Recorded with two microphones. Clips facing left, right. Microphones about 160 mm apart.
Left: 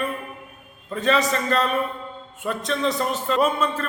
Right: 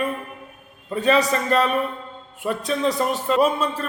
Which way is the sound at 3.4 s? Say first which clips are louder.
Right 1 dB; 35° right (ahead or behind).